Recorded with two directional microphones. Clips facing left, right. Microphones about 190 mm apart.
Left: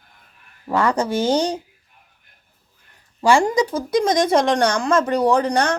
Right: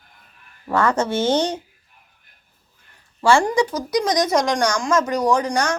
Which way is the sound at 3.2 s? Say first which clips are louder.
Left 1 dB; 15° left (ahead or behind).